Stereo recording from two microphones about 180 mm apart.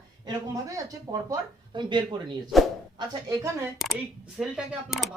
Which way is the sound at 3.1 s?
20° right (ahead or behind).